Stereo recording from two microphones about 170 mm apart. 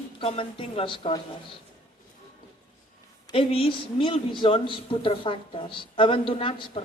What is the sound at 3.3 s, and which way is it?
A woman's voice, 35° left (ahead or behind).